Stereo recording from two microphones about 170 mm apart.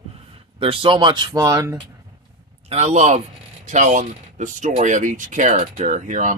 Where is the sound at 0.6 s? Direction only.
30° right (ahead or behind).